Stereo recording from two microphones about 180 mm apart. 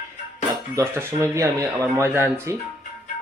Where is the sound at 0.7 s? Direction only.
15° right (ahead or behind).